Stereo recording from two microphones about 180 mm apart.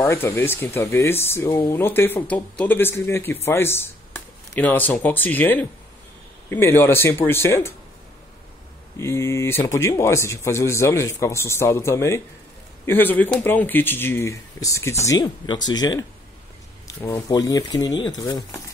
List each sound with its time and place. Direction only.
0.0 s speech: 15° left (ahead or behind)
8.9 s speech: 15° left (ahead or behind)